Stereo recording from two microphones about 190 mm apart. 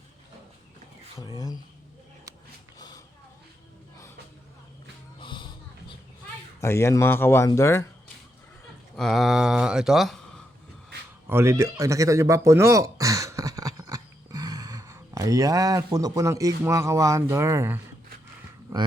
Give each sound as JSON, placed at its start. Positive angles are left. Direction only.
{"t": 1.3, "sound": "speech", "side_deg": -20}
{"t": 5.2, "sound": "a sound", "side_deg": 25}
{"t": 6.6, "sound": "speech", "side_deg": 15}
{"t": 9.0, "sound": "speech", "side_deg": 0}
{"t": 11.3, "sound": "speech", "side_deg": -15}